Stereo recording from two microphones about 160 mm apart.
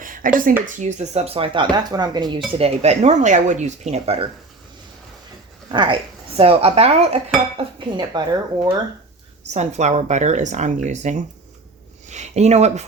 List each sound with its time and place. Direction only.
0.0 s a sound: 60° right (ahead or behind)
0.6 s speech: 45° right (ahead or behind); by 2.4 s 25° right (ahead or behind)
2.5 s speech: 40° right (ahead or behind)
5.6 s speech: 30° right (ahead or behind)
7.5 s speech: 30° right (ahead or behind)
9.5 s speech: 45° right (ahead or behind)